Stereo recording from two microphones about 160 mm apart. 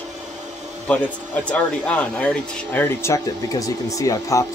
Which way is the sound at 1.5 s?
10° left (ahead or behind).